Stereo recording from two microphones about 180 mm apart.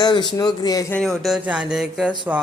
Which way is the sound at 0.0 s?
25° left (ahead or behind).